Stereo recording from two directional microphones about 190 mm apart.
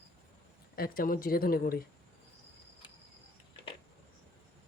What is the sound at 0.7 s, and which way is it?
Speech, 50° left (ahead or behind).